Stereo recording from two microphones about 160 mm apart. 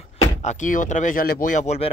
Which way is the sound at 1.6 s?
45° left (ahead or behind).